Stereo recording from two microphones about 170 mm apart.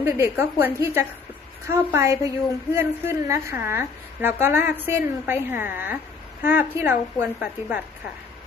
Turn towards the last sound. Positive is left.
turn(degrees=-10)  # may be behind; listen again after turning